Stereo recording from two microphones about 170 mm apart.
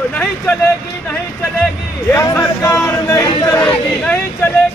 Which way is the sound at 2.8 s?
20° left (ahead or behind).